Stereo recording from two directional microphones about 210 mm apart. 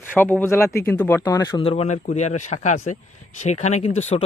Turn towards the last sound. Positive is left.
turn(degrees=30)  # may be behind; listen again after turning